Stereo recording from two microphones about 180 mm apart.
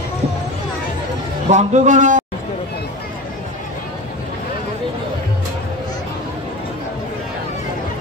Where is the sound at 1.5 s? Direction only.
40° right (ahead or behind).